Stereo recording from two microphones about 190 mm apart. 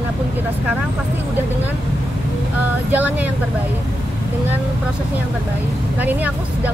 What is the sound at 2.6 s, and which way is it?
Speech, 10° right (ahead or behind).